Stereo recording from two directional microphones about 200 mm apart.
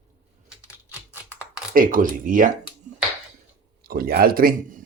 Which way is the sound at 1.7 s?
45° right (ahead or behind).